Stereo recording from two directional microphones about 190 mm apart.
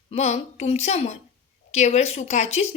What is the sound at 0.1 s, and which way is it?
A woman's voice, 35° left (ahead or behind).